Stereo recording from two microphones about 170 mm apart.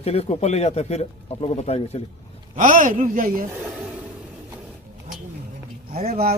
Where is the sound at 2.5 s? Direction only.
50° right (ahead or behind).